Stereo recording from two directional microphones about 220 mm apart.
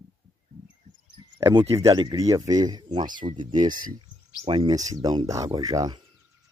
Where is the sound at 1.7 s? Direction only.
15° right (ahead or behind).